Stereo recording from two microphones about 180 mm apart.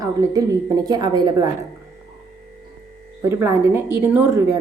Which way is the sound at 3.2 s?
15° right (ahead or behind).